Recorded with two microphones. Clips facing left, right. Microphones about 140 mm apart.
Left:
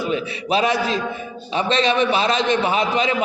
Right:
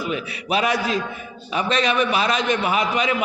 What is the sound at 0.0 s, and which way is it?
A man's voice, 30° left (ahead or behind).